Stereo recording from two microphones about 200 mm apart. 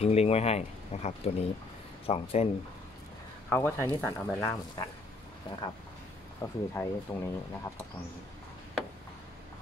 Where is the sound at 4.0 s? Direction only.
15° left (ahead or behind).